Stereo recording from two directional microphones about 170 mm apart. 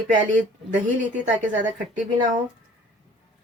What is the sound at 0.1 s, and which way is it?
Speech, 50° right (ahead or behind).